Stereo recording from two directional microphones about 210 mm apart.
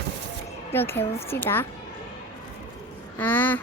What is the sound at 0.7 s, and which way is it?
Speech, 10° left (ahead or behind).